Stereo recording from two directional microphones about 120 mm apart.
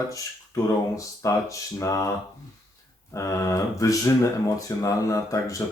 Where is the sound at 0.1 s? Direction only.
25° left (ahead or behind).